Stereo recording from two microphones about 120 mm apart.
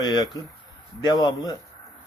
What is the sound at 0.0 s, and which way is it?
Speech, 35° left (ahead or behind).